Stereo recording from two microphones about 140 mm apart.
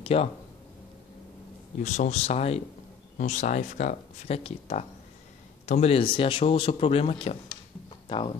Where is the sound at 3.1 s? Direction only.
60° left (ahead or behind).